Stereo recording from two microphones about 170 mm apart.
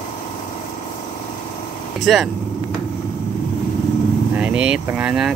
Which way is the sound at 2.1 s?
Centre (ahead or behind).